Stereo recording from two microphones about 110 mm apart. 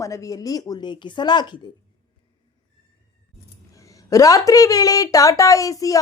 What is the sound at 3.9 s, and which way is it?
Speech, 30° left (ahead or behind).